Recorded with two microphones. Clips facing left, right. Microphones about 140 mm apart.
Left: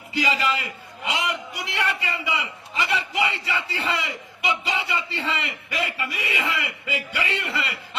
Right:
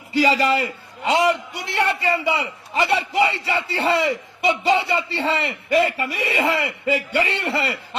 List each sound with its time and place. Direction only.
0.1 s a man's voice: 35° right (ahead or behind)